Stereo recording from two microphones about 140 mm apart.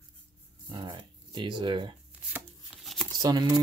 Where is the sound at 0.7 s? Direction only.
30° right (ahead or behind).